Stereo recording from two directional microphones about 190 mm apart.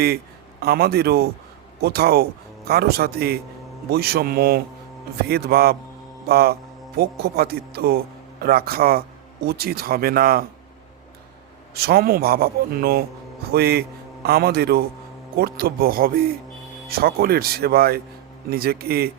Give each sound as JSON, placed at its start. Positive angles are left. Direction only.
{"t": 0.6, "sound": "a man's voice", "side_deg": -55}
{"t": 11.7, "sound": "a man's voice", "side_deg": -55}